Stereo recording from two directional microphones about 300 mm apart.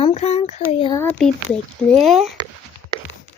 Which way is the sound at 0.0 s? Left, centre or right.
Left.